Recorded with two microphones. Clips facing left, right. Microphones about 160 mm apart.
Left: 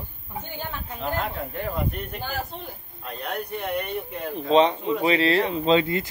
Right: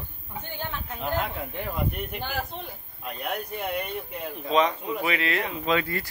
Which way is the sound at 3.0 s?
15° right (ahead or behind).